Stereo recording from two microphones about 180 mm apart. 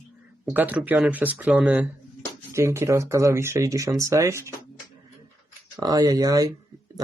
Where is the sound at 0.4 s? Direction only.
10° right (ahead or behind).